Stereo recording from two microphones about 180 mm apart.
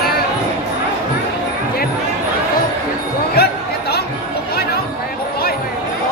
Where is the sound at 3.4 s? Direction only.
60° left (ahead or behind).